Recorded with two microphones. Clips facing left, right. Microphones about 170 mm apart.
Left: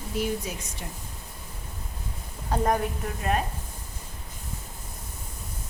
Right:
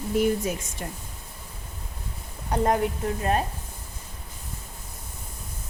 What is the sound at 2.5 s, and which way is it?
Speech, 20° right (ahead or behind).